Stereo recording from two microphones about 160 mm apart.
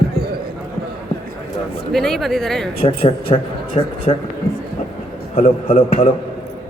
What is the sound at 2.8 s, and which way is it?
A man's voice, 35° left (ahead or behind).